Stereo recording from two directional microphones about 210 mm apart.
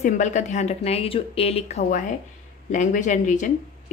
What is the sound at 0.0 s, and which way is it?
Speech, 35° left (ahead or behind).